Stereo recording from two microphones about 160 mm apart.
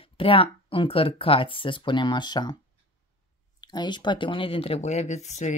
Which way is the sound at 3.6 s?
25° left (ahead or behind).